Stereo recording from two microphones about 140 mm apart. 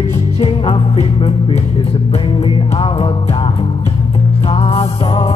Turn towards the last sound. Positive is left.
turn(degrees=40)  # may be behind; listen again after turning